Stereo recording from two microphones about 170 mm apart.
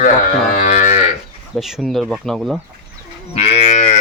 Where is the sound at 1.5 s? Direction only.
Centre (ahead or behind).